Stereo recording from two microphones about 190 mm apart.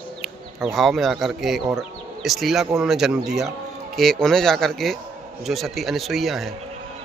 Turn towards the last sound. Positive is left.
turn(degrees=0)  # may be behind; listen again after turning